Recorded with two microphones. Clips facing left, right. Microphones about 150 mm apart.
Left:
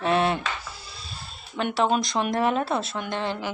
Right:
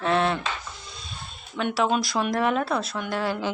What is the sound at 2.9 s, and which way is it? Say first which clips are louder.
Speech: right 1 dB; 5° right (ahead or behind).